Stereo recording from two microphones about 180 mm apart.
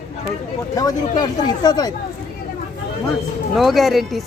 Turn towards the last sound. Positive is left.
turn(degrees=0)  # may be behind; listen again after turning